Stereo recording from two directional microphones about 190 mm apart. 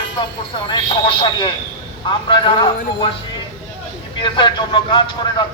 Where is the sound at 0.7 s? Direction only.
25° left (ahead or behind).